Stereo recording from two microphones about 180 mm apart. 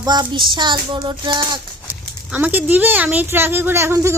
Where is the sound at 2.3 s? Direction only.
10° right (ahead or behind).